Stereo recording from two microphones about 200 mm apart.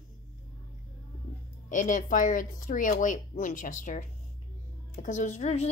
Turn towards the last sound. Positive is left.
turn(degrees=30)  # may be behind; listen again after turning